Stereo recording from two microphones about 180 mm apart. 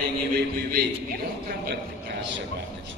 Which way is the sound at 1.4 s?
60° right (ahead or behind).